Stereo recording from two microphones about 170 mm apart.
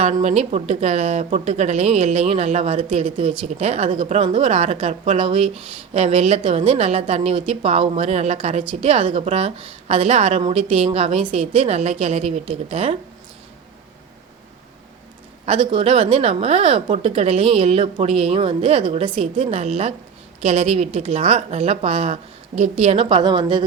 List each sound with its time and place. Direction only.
0.0 s a woman's voice: 40° right (ahead or behind)
15.4 s a woman's voice: 35° right (ahead or behind)